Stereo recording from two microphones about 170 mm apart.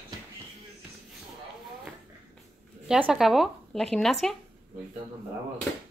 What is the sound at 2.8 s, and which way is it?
Speech, 5° right (ahead or behind).